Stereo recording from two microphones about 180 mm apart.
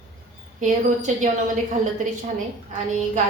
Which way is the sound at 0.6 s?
45° right (ahead or behind).